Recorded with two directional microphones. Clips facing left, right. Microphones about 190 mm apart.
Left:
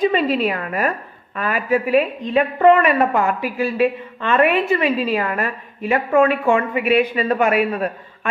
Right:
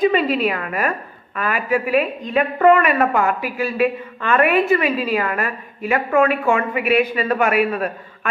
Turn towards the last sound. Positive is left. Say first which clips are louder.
# even
turn(degrees=30)  # may be behind; listen again after turning